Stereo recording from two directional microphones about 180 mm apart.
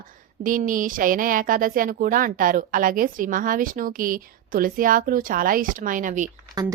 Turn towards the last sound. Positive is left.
turn(degrees=-20)  # may be behind; listen again after turning